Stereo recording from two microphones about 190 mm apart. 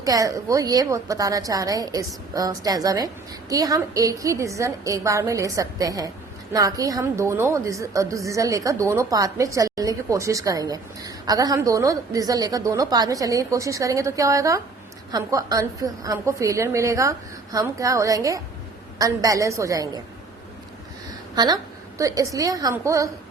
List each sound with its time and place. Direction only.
0.0 s a woman's voice: 20° right (ahead or behind)
21.3 s a woman's voice: 20° right (ahead or behind)